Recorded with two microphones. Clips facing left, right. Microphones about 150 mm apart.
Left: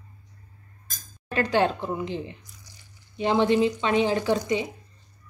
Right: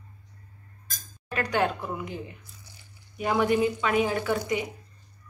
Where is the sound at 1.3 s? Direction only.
30° left (ahead or behind).